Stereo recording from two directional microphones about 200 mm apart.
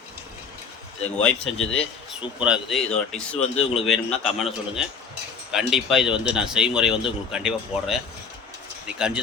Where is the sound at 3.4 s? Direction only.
30° left (ahead or behind).